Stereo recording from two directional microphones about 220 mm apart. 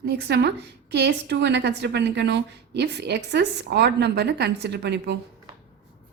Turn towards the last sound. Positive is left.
turn(degrees=-50)  # may be behind; listen again after turning